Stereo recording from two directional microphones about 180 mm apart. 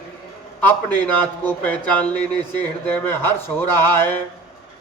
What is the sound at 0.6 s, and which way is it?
A man's voice, 10° left (ahead or behind).